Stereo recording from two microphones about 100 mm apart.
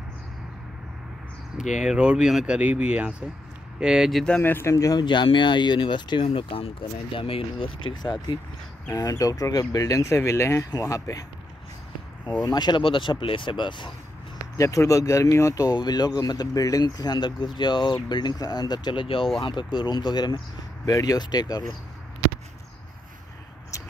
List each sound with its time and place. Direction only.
1.6 s speech: 10° right (ahead or behind)
4.4 s speech: 20° left (ahead or behind)
4.7 s speech: 35° left (ahead or behind)
5.0 s speech: 50° left (ahead or behind)
6.2 s speech: 70° left (ahead or behind)
8.0 s speech: 45° left (ahead or behind)
12.4 s speech: 45° left (ahead or behind)
14.6 s speech: 30° left (ahead or behind)
19.0 s speech: 65° left (ahead or behind)
19.4 s speech: 50° left (ahead or behind)